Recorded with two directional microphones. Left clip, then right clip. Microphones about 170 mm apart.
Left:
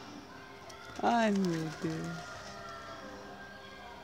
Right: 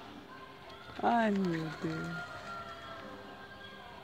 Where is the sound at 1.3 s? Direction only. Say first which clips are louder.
Left 1 dB; 45° left (ahead or behind).